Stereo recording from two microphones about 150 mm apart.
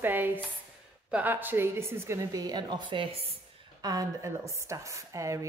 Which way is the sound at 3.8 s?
20° right (ahead or behind).